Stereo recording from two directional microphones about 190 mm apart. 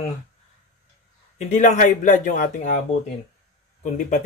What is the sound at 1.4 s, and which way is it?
Speech, 40° left (ahead or behind).